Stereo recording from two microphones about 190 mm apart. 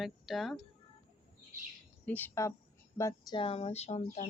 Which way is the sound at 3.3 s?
30° left (ahead or behind).